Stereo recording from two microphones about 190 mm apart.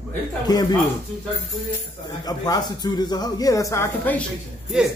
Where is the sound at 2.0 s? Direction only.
20° left (ahead or behind).